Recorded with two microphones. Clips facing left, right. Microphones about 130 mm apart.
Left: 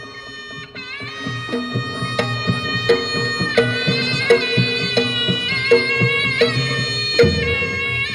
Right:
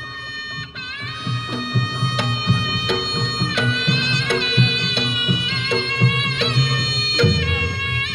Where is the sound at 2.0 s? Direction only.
55° left (ahead or behind).